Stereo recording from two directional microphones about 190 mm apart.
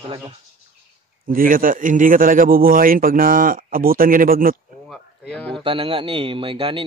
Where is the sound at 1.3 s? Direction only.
50° right (ahead or behind).